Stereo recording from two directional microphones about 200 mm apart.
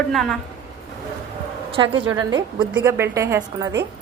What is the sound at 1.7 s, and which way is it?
A woman's voice, 25° right (ahead or behind).